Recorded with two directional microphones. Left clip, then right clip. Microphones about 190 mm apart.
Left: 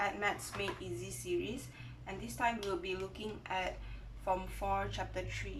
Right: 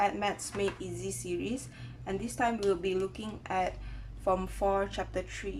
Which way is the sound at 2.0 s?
30° right (ahead or behind).